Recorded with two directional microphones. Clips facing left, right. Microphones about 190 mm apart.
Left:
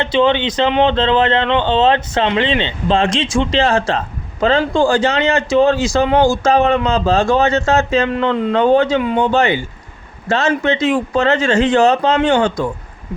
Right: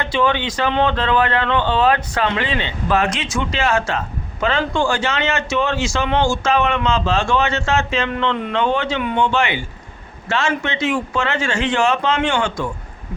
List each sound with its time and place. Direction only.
0.0 s a man's voice: 20° left (ahead or behind); by 9.0 s 40° left (ahead or behind)
9.0 s speech: 25° left (ahead or behind)
9.3 s a man's voice: 40° left (ahead or behind)